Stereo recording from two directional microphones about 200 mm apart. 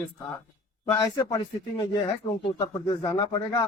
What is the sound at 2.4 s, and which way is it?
Speech, 15° left (ahead or behind).